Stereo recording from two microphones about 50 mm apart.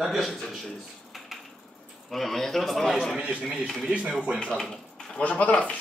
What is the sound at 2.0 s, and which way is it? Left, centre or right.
Speech, centre.